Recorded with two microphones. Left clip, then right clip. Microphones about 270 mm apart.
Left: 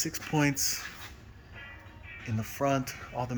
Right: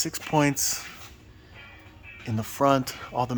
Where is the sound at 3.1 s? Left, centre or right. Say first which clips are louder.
Right 8 dB; right.